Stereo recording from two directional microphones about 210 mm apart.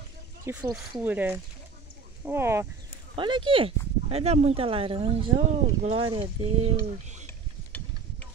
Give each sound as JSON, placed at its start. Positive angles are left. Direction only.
{"t": 0.5, "sound": "speech", "side_deg": -5}
{"t": 3.2, "sound": "speech", "side_deg": -25}
{"t": 7.2, "sound": "a sound", "side_deg": 5}